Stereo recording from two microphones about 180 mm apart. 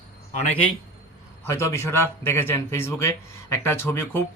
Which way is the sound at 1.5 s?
15° left (ahead or behind).